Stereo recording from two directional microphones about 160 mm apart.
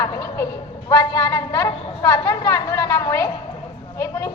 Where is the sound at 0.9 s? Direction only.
20° left (ahead or behind).